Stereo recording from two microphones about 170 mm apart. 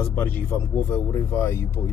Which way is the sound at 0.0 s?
10° left (ahead or behind).